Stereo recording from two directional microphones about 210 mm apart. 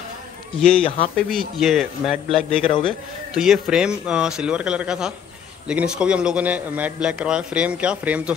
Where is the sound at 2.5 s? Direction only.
25° left (ahead or behind).